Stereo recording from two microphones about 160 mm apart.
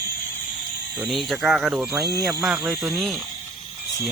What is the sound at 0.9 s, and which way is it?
Speech, centre (ahead or behind).